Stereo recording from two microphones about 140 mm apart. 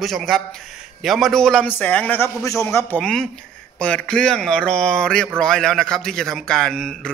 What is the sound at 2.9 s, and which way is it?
A man's voice, 5° left (ahead or behind).